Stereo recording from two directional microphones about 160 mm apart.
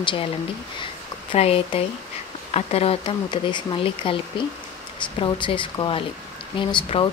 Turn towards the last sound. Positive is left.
turn(degrees=30)  # may be behind; listen again after turning